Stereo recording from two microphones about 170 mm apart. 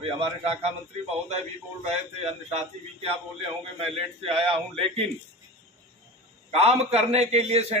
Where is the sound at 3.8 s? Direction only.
35° right (ahead or behind).